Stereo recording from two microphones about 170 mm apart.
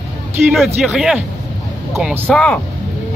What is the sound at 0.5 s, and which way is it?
Speech, centre (ahead or behind).